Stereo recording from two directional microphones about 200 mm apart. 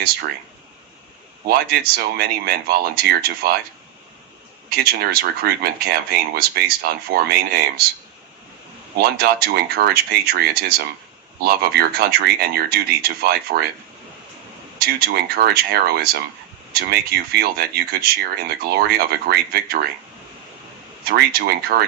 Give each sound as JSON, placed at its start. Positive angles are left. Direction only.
{"t": 1.5, "sound": "speech", "side_deg": -50}
{"t": 4.7, "sound": "speech", "side_deg": -50}
{"t": 9.0, "sound": "speech", "side_deg": -50}
{"t": 14.8, "sound": "speech", "side_deg": -50}
{"t": 21.0, "sound": "speech", "side_deg": -50}